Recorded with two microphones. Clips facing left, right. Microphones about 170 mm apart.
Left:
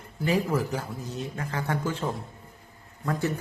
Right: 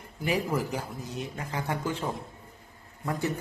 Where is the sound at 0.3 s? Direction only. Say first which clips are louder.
Left 3 dB; 15° right (ahead or behind).